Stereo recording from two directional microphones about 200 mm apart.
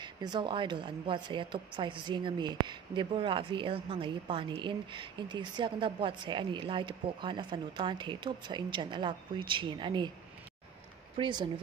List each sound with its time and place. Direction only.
0.0 s a woman's voice: 20° right (ahead or behind)
11.1 s a woman's voice: 25° right (ahead or behind)